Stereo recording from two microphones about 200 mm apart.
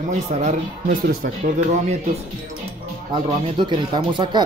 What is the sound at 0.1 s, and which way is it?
Speech, 35° right (ahead or behind).